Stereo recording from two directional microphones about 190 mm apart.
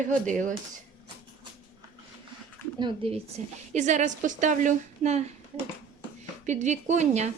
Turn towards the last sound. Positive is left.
turn(degrees=-35)  # may be behind; listen again after turning